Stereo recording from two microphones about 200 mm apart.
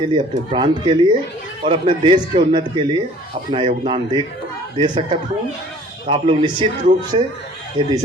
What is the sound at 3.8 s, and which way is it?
A man's voice, 25° right (ahead or behind).